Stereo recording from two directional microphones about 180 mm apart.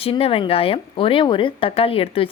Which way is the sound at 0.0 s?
30° left (ahead or behind).